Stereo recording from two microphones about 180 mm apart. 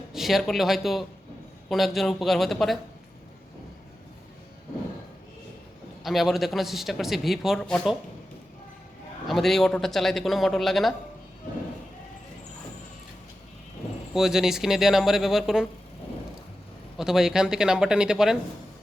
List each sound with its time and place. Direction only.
0.1 s a man's voice: centre (ahead or behind)
6.0 s a man's voice: centre (ahead or behind)
9.2 s a man's voice: centre (ahead or behind)
14.1 s a man's voice: centre (ahead or behind)
17.0 s a man's voice: 5° right (ahead or behind)